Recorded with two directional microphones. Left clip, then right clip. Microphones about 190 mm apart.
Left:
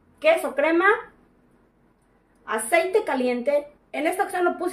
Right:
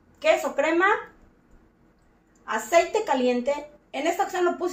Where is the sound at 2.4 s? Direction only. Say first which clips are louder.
Even; 35° left (ahead or behind).